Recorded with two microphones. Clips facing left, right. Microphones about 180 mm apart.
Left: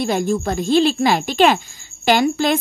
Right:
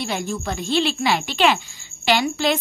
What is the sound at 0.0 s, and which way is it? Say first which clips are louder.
A woman's voice: left 7 dB; 45° left (ahead or behind).